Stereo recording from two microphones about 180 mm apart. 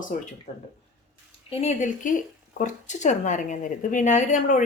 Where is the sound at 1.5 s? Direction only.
40° left (ahead or behind).